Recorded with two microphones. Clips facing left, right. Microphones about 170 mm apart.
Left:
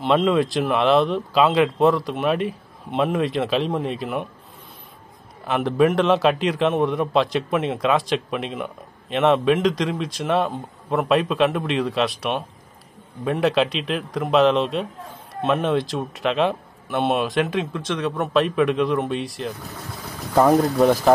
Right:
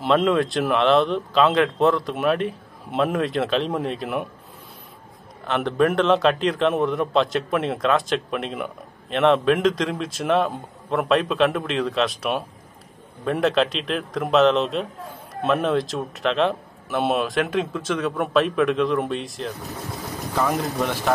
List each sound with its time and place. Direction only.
0.0 s a man's voice: 5° left (ahead or behind)
5.5 s a man's voice: 5° left (ahead or behind)
20.3 s speech: 40° left (ahead or behind)